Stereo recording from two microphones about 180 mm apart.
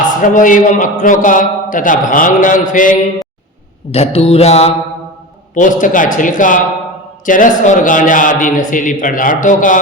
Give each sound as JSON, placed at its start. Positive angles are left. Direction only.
{"t": 0.0, "sound": "a man's voice", "side_deg": 45}
{"t": 3.9, "sound": "mantra", "side_deg": 35}
{"t": 5.5, "sound": "a man's voice", "side_deg": 45}